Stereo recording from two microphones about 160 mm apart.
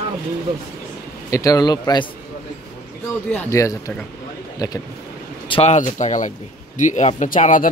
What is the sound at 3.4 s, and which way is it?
Speech, 20° left (ahead or behind).